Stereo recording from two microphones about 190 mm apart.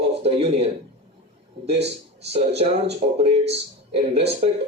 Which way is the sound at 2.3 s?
30° right (ahead or behind).